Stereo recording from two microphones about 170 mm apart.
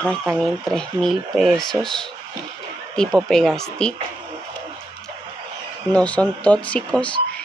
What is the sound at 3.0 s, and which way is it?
Speech, centre (ahead or behind).